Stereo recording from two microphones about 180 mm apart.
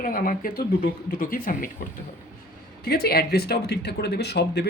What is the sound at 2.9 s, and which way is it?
A woman's voice, 60° left (ahead or behind).